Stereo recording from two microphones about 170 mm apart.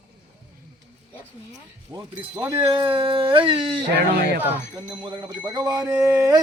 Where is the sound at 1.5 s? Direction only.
25° right (ahead or behind).